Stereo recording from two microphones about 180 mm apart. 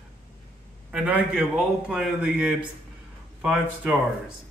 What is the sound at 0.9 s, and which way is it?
A man's voice, 5° right (ahead or behind).